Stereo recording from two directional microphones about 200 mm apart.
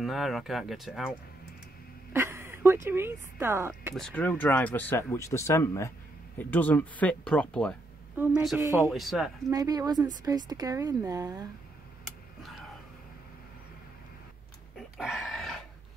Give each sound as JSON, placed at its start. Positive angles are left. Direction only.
{"t": 0.0, "sound": "speech", "side_deg": 0}
{"t": 2.1, "sound": "speech", "side_deg": -15}
{"t": 3.9, "sound": "speech", "side_deg": 5}
{"t": 8.6, "sound": "speech", "side_deg": -15}
{"t": 8.9, "sound": "speech", "side_deg": 0}
{"t": 9.5, "sound": "speech", "side_deg": -20}
{"t": 15.0, "sound": "dog", "side_deg": 0}